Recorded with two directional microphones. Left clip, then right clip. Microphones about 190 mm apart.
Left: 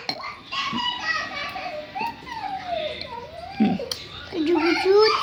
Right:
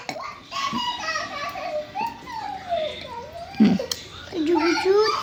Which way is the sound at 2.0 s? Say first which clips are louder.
Left 1 dB; 50° right (ahead or behind).